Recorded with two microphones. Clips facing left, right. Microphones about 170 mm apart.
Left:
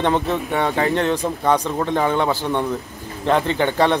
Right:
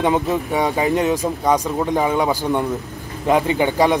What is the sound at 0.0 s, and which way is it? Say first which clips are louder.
Speech: right 1 dB; 10° right (ahead or behind).